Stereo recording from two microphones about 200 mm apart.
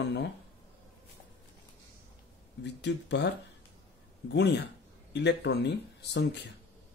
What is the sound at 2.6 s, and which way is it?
Speech, 60° left (ahead or behind).